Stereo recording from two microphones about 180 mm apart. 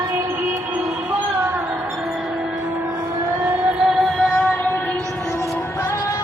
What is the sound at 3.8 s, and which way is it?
Music, centre (ahead or behind).